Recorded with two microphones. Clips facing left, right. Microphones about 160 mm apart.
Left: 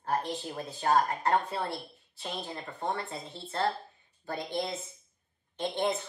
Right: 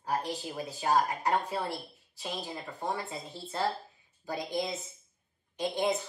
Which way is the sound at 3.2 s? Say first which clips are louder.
Even; 25° left (ahead or behind).